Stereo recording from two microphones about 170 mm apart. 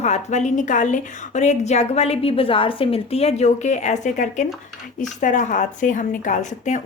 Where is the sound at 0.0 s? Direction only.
40° left (ahead or behind).